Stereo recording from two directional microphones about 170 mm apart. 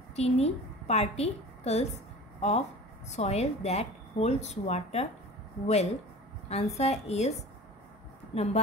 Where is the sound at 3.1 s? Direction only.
40° left (ahead or behind).